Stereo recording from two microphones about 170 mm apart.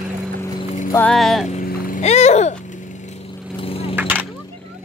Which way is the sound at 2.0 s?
40° left (ahead or behind).